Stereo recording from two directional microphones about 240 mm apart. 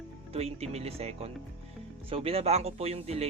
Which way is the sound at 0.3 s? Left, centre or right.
Right.